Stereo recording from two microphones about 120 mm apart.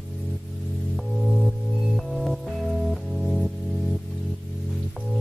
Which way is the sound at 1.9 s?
Centre (ahead or behind).